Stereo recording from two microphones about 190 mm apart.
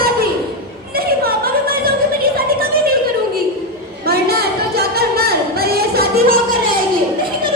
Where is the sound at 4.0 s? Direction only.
55° right (ahead or behind).